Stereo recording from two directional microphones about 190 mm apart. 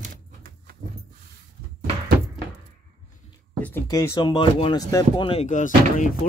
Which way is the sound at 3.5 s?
10° left (ahead or behind).